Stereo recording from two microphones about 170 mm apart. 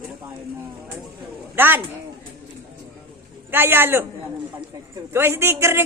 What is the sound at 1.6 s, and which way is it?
Speech, 10° right (ahead or behind).